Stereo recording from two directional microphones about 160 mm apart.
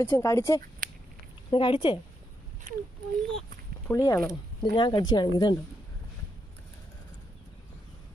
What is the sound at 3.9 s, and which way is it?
Speech, 20° left (ahead or behind).